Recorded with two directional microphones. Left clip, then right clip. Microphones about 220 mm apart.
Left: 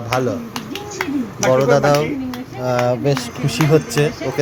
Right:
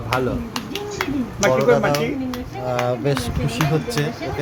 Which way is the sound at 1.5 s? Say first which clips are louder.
Left 4 dB; 10° left (ahead or behind).